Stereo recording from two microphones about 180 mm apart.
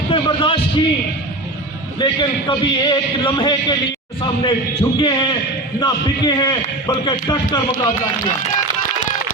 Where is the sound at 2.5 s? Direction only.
25° left (ahead or behind).